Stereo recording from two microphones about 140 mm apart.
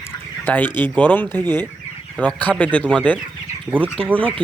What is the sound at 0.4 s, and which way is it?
Speech, 10° left (ahead or behind).